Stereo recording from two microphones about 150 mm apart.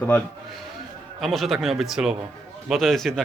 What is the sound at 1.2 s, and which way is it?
A man's voice, centre (ahead or behind).